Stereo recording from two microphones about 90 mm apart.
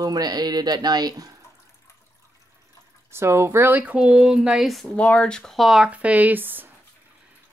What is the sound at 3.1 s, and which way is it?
Speech, 30° right (ahead or behind).